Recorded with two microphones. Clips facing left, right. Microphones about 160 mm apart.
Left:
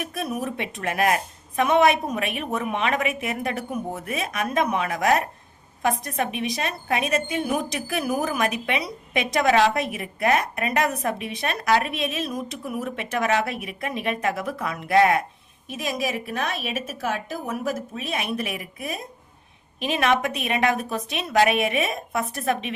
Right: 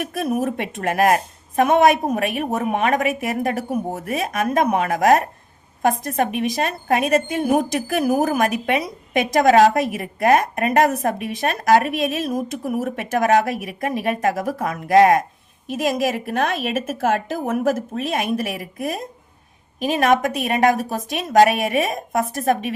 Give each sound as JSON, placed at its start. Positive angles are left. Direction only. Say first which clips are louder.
{"t": 0.0, "sound": "a woman's voice", "louder": "right 6 dB", "side_deg": -50}